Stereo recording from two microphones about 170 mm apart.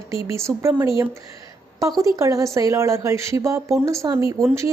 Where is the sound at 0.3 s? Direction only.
15° right (ahead or behind).